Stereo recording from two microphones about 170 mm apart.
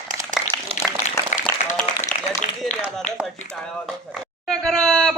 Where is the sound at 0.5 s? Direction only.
25° right (ahead or behind).